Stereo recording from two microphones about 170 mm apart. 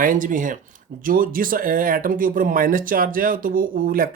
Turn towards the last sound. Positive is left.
turn(degrees=-55)  # may be behind; listen again after turning